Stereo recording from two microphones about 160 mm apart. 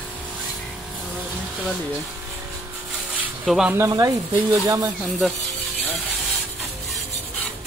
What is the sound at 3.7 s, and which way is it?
Speech, 20° right (ahead or behind).